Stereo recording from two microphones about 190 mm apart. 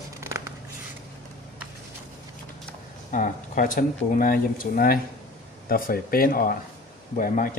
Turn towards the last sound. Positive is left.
turn(degrees=45)  # may be behind; listen again after turning